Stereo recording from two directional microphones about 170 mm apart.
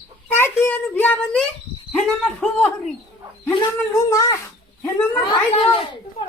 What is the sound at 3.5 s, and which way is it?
Speech, 15° left (ahead or behind).